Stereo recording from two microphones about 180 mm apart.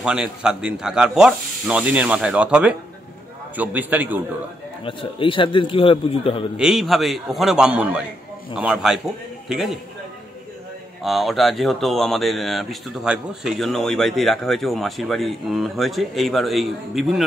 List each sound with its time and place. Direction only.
0.0 s a man's voice: 5° right (ahead or behind)
4.8 s a man's voice: 30° left (ahead or behind)
6.5 s speech: centre (ahead or behind)
11.1 s speech: centre (ahead or behind)